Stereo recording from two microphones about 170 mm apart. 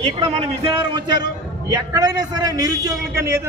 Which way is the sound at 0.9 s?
25° right (ahead or behind).